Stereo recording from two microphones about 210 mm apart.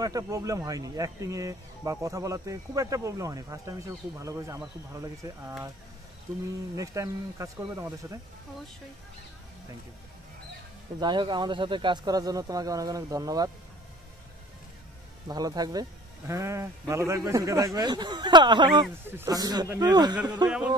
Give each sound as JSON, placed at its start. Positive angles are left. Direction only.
{"t": 0.0, "sound": "speech", "side_deg": -15}
{"t": 6.8, "sound": "speech", "side_deg": -15}
{"t": 11.0, "sound": "speech", "side_deg": -20}
{"t": 15.2, "sound": "speech", "side_deg": -20}